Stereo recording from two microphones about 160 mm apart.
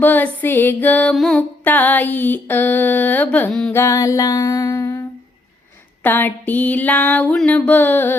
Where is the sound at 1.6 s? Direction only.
10° left (ahead or behind).